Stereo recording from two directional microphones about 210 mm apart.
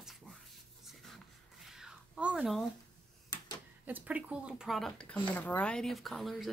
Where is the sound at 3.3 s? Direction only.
20° left (ahead or behind).